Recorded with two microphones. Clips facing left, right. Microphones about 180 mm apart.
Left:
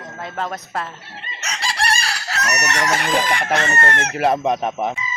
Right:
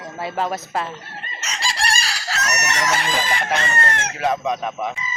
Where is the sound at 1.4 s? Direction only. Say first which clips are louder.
Left 2 dB; 60° left (ahead or behind).